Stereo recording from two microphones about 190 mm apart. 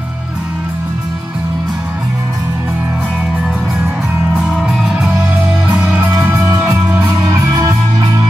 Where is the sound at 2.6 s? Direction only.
10° right (ahead or behind).